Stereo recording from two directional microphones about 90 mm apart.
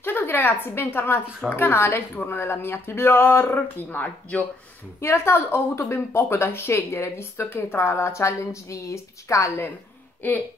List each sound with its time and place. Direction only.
0.0 s a woman's voice: 25° left (ahead or behind)